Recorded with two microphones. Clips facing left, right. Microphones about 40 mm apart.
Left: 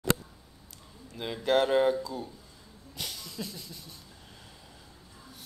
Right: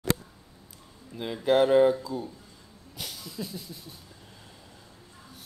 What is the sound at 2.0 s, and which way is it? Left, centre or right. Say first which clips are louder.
Speech: right 3 dB; centre.